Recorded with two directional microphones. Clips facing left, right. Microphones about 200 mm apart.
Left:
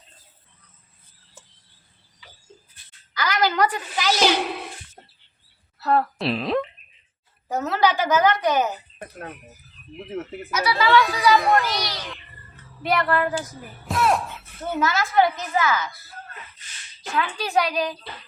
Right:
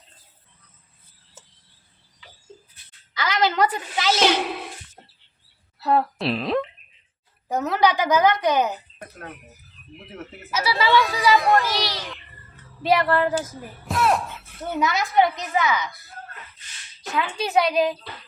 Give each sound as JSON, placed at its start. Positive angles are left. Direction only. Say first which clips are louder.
{"t": 3.2, "sound": "a sound", "louder": "even", "side_deg": -25}
{"t": 4.2, "sound": "a woman's voice", "louder": "left 1 dB", "side_deg": 0}
{"t": 5.8, "sound": "a woman's voice", "louder": "even", "side_deg": -15}
{"t": 6.1, "sound": "speech", "louder": "even", "side_deg": 0}
{"t": 7.5, "sound": "a woman's voice", "louder": "right 1 dB", "side_deg": -15}
{"t": 10.5, "sound": "a woman's voice", "louder": "left 1 dB", "side_deg": -25}
{"t": 10.8, "sound": "speech", "louder": "left 1 dB", "side_deg": 0}
{"t": 12.8, "sound": "a woman's voice", "louder": "right 2 dB", "side_deg": -25}
{"t": 13.8, "sound": "a sound", "louder": "even", "side_deg": 0}
{"t": 14.8, "sound": "a woman's voice", "louder": "even", "side_deg": -20}
{"t": 17.1, "sound": "a woman's voice", "louder": "right 1 dB", "side_deg": -20}